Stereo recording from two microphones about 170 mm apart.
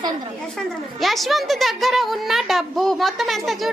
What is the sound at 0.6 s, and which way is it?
A woman's voice, centre (ahead or behind).